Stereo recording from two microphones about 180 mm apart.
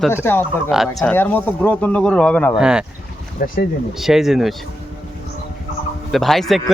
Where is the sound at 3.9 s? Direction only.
Centre (ahead or behind).